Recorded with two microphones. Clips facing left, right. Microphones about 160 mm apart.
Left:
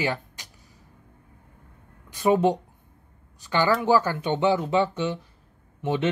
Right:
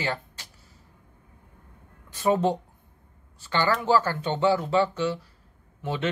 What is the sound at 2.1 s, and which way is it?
Speech, 15° left (ahead or behind).